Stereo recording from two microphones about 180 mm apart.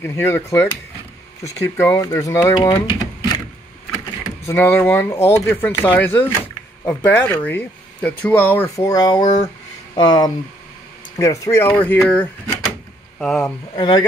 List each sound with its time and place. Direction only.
0.0 s speech: 15° left (ahead or behind)
4.5 s speech: 15° left (ahead or behind)
13.7 s speech: 30° left (ahead or behind)